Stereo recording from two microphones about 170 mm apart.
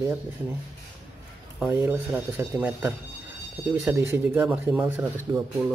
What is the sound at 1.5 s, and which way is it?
Speech, 10° right (ahead or behind).